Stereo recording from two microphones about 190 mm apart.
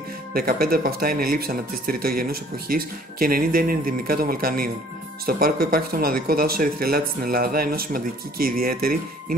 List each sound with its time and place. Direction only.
0.3 s speech: 50° right (ahead or behind)